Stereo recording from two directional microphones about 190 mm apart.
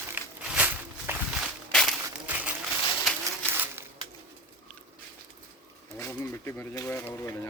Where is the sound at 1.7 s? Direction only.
Centre (ahead or behind).